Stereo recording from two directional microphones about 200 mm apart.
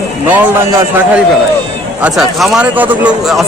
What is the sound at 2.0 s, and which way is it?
Speech, centre (ahead or behind).